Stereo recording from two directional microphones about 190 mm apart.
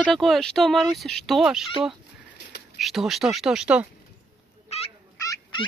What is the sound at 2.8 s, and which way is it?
Speech, centre (ahead or behind).